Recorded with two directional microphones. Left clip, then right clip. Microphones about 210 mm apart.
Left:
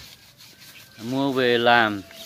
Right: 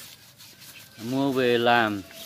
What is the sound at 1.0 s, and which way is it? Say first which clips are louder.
Speech: left 2 dB; centre (ahead or behind).